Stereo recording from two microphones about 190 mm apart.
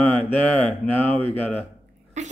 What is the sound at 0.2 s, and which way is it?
Mantra, 30° right (ahead or behind).